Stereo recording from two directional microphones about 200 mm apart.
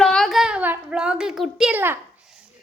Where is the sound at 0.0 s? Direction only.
Centre (ahead or behind).